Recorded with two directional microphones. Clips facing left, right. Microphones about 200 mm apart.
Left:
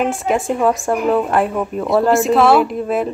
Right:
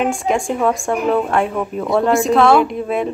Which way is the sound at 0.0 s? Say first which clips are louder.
Even; 5° left (ahead or behind).